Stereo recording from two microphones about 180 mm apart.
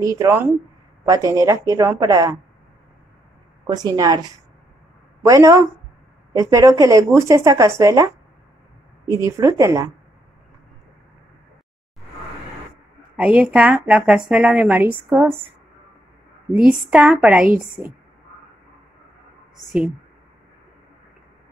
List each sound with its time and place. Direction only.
0.0 s a woman's voice: 20° right (ahead or behind)
3.6 s a woman's voice: 20° right (ahead or behind)
5.2 s speech: 15° right (ahead or behind)
13.1 s a woman's voice: 5° right (ahead or behind)
16.9 s speech: 5° right (ahead or behind)